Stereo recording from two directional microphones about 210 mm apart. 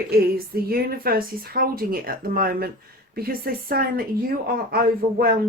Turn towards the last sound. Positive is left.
turn(degrees=-45)  # may be behind; listen again after turning